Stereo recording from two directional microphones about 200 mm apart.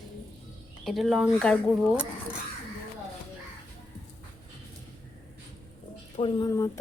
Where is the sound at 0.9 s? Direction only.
Centre (ahead or behind).